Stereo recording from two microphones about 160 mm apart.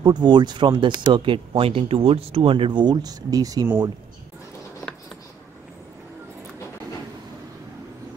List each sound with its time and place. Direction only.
0.0 s speech: 30° right (ahead or behind)